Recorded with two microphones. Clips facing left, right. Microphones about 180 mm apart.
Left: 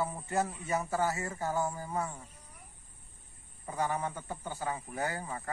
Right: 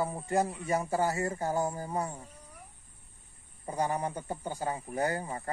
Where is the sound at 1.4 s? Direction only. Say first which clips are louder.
Right 2 dB; 15° right (ahead or behind).